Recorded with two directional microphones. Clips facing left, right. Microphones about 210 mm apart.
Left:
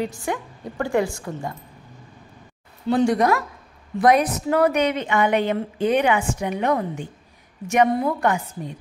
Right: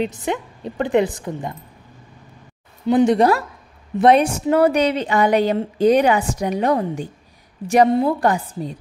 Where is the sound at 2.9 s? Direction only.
20° right (ahead or behind).